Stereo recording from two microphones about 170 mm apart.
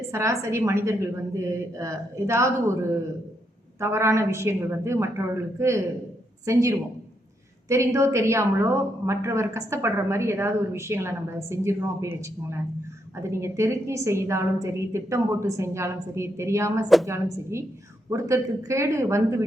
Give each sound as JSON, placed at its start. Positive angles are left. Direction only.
{"t": 0.1, "sound": "a woman's voice", "side_deg": -15}
{"t": 3.8, "sound": "a woman's voice", "side_deg": -15}